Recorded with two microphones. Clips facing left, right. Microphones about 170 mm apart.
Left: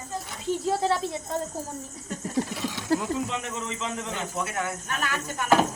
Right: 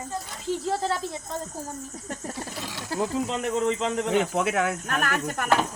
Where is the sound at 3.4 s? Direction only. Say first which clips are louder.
Right 8 dB; 50° right (ahead or behind).